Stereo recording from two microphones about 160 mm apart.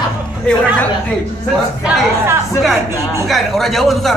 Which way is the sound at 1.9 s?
10° right (ahead or behind).